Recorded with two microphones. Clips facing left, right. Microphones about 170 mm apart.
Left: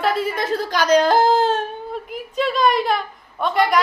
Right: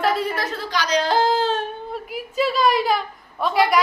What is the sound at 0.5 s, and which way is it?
Speech, 45° left (ahead or behind).